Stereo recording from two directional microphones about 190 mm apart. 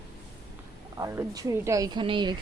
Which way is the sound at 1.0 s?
20° right (ahead or behind).